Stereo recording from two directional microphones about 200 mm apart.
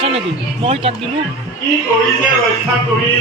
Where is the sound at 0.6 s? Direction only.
30° right (ahead or behind).